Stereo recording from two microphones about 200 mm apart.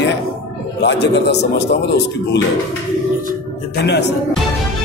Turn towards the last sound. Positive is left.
turn(degrees=60)  # may be behind; listen again after turning